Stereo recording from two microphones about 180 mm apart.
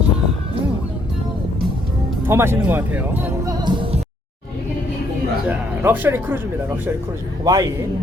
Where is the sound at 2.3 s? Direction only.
15° right (ahead or behind).